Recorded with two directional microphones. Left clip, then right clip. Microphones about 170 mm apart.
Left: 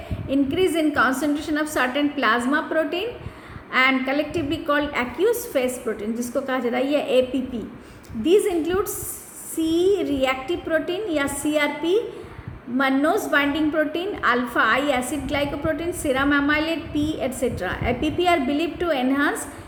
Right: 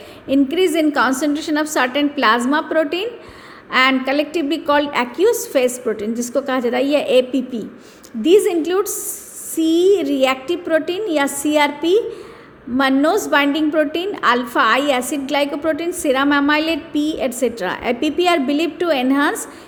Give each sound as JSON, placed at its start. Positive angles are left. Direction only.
{"t": 0.3, "sound": "a woman's voice", "side_deg": -45}